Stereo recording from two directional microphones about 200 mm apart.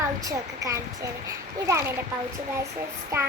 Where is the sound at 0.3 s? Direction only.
15° right (ahead or behind).